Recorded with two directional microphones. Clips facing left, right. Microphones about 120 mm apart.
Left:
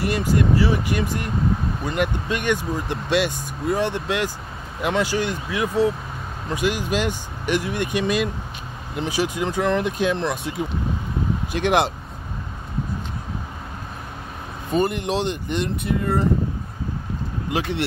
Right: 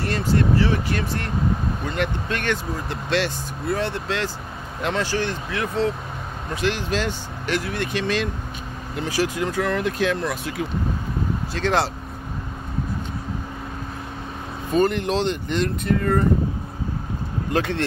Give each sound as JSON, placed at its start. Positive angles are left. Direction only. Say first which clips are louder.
{"t": 0.0, "sound": "speech", "louder": "left 1 dB", "side_deg": 15}
{"t": 14.7, "sound": "speech", "louder": "right 2 dB", "side_deg": 15}
{"t": 17.5, "sound": "speech", "louder": "right 1 dB", "side_deg": 15}